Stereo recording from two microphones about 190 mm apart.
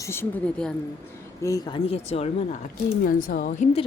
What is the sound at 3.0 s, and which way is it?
Speech, 50° left (ahead or behind).